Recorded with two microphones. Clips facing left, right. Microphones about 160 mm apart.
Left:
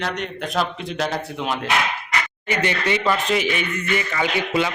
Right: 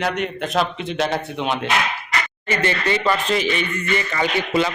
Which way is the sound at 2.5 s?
15° left (ahead or behind).